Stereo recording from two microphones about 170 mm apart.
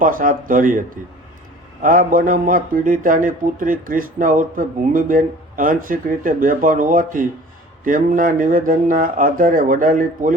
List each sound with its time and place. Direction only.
0.0 s a man's voice: 55° right (ahead or behind)
1.8 s a man's voice: 55° right (ahead or behind)